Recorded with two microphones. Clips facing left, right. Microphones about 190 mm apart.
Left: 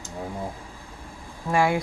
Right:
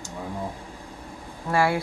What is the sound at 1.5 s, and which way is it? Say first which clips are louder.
Speech: left 1 dB; 15° left (ahead or behind).